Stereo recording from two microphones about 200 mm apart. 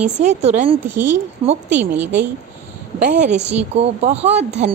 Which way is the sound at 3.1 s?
55° right (ahead or behind).